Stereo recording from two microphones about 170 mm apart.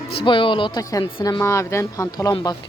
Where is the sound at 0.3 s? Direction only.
30° left (ahead or behind).